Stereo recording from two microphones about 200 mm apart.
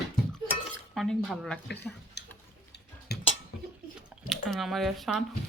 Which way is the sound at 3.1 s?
55° left (ahead or behind).